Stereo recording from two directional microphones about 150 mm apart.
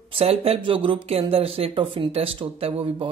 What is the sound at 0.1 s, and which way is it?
Speech, 40° right (ahead or behind).